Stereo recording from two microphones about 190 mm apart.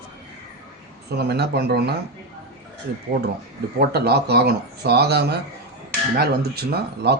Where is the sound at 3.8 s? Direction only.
55° right (ahead or behind).